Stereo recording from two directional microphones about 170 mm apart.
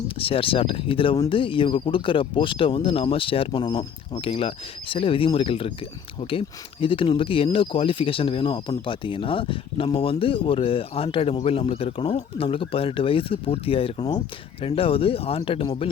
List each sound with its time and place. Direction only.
0.2 s speech: 35° left (ahead or behind)